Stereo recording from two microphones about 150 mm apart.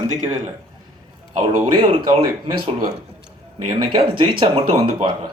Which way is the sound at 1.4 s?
35° right (ahead or behind).